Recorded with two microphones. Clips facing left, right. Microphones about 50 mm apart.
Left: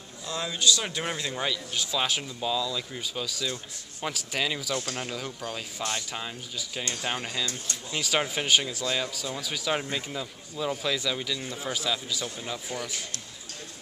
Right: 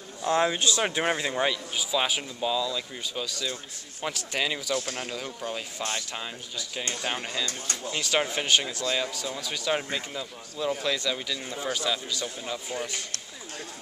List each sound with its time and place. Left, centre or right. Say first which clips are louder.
0.2 s speech: right 6 dB; right; by 1.6 s centre
1.8 s speech: right 1 dB; centre